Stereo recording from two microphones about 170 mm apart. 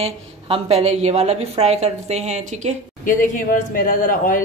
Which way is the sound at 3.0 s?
50° left (ahead or behind).